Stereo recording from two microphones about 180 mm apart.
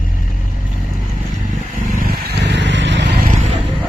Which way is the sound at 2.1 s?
65° right (ahead or behind).